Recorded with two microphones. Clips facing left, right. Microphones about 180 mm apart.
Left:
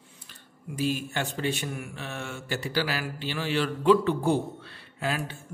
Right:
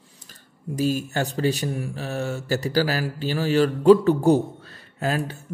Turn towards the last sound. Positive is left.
turn(degrees=-40)  # may be behind; listen again after turning